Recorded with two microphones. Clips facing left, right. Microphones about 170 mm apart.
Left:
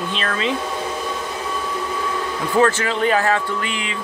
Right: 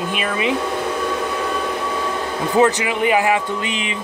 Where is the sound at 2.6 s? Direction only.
15° right (ahead or behind).